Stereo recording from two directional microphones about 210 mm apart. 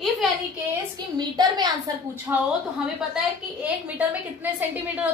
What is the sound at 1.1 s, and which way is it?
Speech, 20° right (ahead or behind).